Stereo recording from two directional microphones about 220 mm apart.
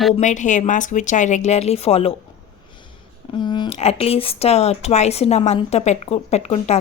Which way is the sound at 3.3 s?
20° left (ahead or behind).